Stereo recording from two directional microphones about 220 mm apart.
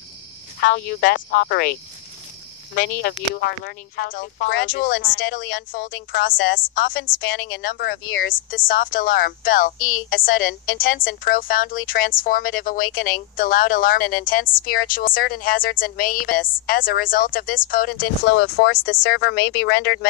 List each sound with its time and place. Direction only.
0.6 s speech: 45° left (ahead or behind)
2.7 s speech: 50° left (ahead or behind)
8.5 s speech: 40° left (ahead or behind)
9.8 s a woman's voice: 75° left (ahead or behind)
10.0 s speech: 40° left (ahead or behind)
18.2 s speech: 55° left (ahead or behind)